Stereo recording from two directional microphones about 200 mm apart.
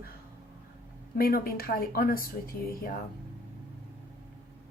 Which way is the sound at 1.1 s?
45° left (ahead or behind).